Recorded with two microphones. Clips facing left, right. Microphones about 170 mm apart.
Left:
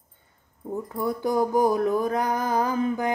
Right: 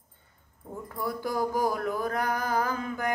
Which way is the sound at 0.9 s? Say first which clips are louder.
Left 6 dB; 20° left (ahead or behind).